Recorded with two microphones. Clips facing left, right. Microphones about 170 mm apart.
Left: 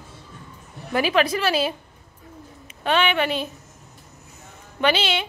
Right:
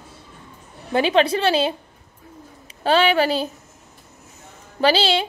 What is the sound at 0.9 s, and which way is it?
Speech, 30° right (ahead or behind).